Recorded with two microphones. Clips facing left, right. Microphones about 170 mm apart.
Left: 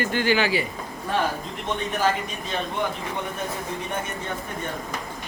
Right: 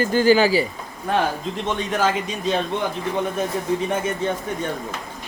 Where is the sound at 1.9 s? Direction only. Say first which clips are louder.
Right 3 dB; 90° right.